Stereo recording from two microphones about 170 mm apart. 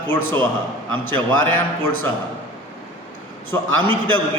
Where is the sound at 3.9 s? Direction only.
10° left (ahead or behind).